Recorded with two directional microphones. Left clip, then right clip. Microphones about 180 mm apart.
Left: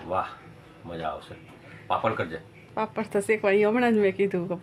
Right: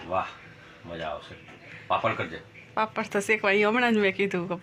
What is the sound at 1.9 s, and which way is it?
Speech, 20° left (ahead or behind).